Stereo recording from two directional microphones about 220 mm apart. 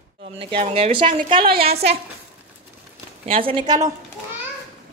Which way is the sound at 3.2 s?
25° right (ahead or behind).